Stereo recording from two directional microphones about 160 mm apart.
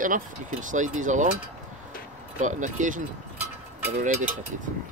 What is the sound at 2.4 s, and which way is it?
Speech, 50° right (ahead or behind).